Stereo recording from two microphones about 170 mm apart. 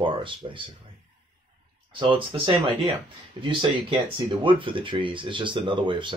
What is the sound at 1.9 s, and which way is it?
Speech, 30° right (ahead or behind).